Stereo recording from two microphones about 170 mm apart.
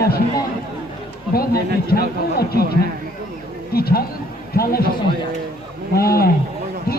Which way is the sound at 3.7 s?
65° left (ahead or behind).